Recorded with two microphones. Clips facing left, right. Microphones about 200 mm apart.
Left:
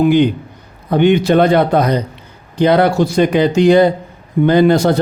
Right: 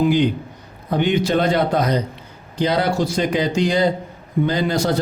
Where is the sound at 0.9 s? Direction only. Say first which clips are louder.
Left 7 dB; 65° left (ahead or behind).